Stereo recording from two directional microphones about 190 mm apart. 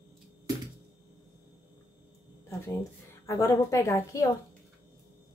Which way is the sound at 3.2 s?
15° left (ahead or behind).